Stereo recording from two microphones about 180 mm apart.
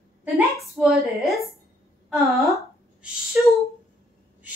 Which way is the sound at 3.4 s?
5° right (ahead or behind).